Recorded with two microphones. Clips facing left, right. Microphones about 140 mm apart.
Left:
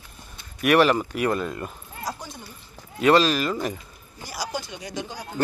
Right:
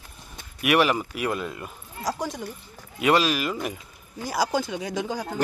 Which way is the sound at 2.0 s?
90° right.